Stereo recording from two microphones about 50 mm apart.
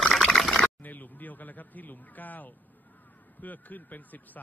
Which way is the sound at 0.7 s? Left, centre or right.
Left.